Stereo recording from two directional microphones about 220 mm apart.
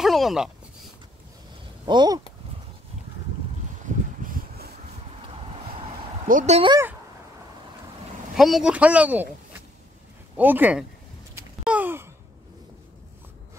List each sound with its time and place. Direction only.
0.0 s a sound: centre (ahead or behind)
1.9 s speech: 20° right (ahead or behind)
3.8 s a sound: 40° right (ahead or behind)
6.2 s speech: 35° right (ahead or behind)
8.4 s speech: centre (ahead or behind)
11.6 s sigh: 5° right (ahead or behind)